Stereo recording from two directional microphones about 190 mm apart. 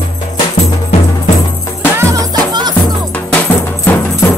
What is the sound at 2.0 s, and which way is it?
Music, 15° right (ahead or behind).